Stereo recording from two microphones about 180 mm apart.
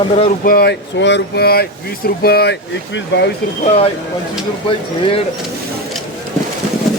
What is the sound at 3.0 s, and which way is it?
Speech, 75° left (ahead or behind).